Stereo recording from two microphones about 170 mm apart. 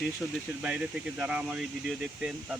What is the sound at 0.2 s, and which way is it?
Speech, centre (ahead or behind).